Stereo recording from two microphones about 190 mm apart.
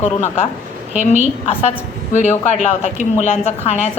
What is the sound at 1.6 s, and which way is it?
A woman's voice, 35° left (ahead or behind).